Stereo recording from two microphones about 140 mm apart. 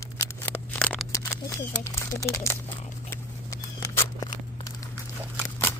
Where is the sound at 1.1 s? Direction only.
20° left (ahead or behind).